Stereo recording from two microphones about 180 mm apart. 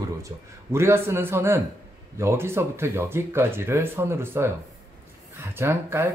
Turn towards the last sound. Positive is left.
turn(degrees=-15)  # may be behind; listen again after turning